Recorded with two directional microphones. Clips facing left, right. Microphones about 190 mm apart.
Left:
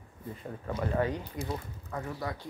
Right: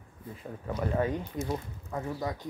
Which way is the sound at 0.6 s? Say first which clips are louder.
Right 1 dB; 10° right (ahead or behind).